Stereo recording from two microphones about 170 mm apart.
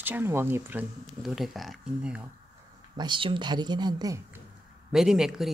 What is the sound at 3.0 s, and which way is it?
Speech, 30° right (ahead or behind).